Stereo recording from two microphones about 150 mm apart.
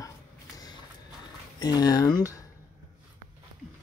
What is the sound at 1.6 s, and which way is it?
Speech, 25° left (ahead or behind).